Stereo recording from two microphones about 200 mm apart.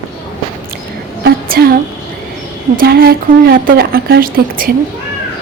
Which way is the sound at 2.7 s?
45° right (ahead or behind).